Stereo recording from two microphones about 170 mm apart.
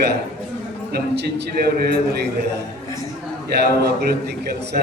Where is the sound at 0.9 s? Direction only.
80° right.